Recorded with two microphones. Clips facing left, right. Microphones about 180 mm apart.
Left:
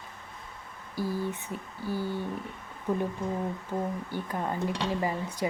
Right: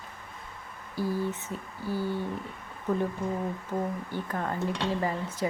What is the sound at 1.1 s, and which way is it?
Speech, 15° left (ahead or behind).